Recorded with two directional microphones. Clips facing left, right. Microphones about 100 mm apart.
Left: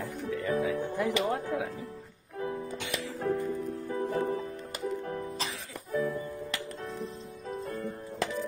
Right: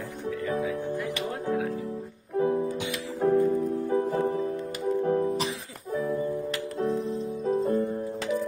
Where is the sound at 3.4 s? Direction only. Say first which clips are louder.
Right 9 dB; 30° right (ahead or behind).